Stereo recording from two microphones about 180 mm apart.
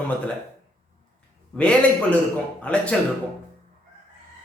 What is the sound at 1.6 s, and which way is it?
A man's voice, 5° left (ahead or behind).